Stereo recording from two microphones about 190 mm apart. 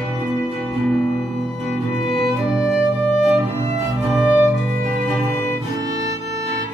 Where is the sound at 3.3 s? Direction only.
35° right (ahead or behind).